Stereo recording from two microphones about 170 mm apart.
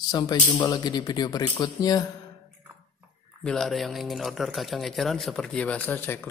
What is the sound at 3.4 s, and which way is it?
Speech, 5° left (ahead or behind).